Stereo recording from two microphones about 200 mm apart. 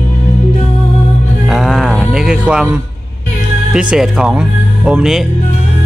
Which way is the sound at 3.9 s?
Centre (ahead or behind).